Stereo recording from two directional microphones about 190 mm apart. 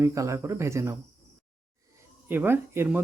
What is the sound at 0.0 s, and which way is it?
Speech, 15° right (ahead or behind).